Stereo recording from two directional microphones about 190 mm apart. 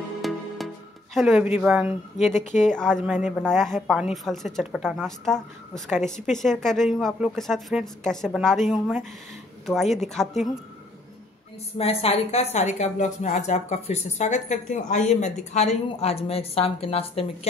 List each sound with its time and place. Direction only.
0.2 s music: centre (ahead or behind)
1.1 s a woman's voice: 5° right (ahead or behind)
11.8 s a woman's voice: 30° left (ahead or behind)